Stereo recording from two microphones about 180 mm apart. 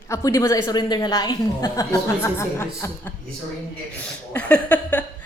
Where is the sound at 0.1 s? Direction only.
15° left (ahead or behind).